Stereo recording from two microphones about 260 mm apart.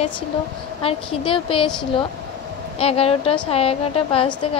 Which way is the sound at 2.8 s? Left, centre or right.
Left.